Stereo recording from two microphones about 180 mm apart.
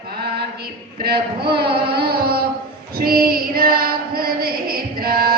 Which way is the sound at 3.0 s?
55° right (ahead or behind).